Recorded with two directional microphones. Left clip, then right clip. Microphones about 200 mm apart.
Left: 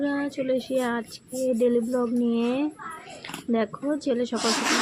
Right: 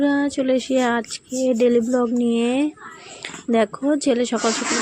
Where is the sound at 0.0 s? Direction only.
30° right (ahead or behind).